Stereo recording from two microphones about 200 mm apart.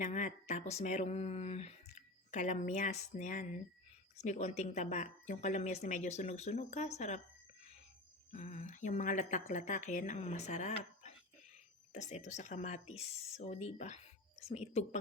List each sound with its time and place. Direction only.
0.0 s speech: 35° left (ahead or behind)
8.3 s speech: 35° left (ahead or behind)